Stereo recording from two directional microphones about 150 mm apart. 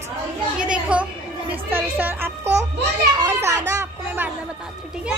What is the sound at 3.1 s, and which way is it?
Children playing, 20° right (ahead or behind).